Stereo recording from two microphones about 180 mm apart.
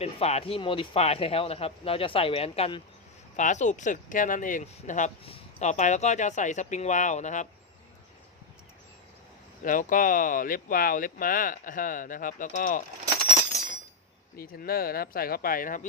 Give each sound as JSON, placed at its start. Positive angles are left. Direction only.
{"t": 0.0, "sound": "speech", "side_deg": 35}
{"t": 3.3, "sound": "speech", "side_deg": 40}
{"t": 9.6, "sound": "speech", "side_deg": 50}
{"t": 14.3, "sound": "speech", "side_deg": 55}